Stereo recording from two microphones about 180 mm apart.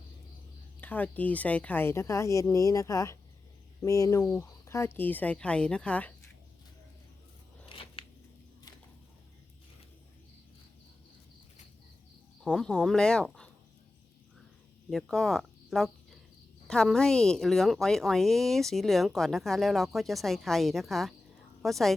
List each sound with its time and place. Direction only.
0.8 s speech: 10° left (ahead or behind)
7.7 s a sound: 30° left (ahead or behind)
12.4 s a woman's voice: 5° left (ahead or behind)
14.8 s a woman's voice: centre (ahead or behind)